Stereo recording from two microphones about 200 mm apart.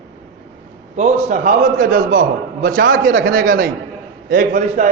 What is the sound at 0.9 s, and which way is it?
A man's voice, 40° right (ahead or behind).